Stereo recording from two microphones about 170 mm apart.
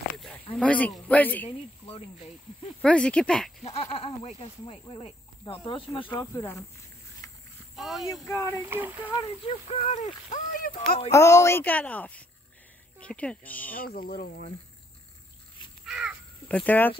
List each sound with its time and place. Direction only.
0.6 s speech: 10° left (ahead or behind)
2.8 s speech: 5° left (ahead or behind)
3.6 s speech: 35° left (ahead or behind)
6.1 s speech: 20° left (ahead or behind)
7.7 s speech: centre (ahead or behind)
8.1 s speech: 20° left (ahead or behind)
8.5 s speech: 15° right (ahead or behind)
9.5 s speech: 35° left (ahead or behind)
11.1 s speech: 15° left (ahead or behind)
13.7 s speech: 60° left (ahead or behind)
15.8 s crow: 5° right (ahead or behind)
16.4 s speech: 10° left (ahead or behind)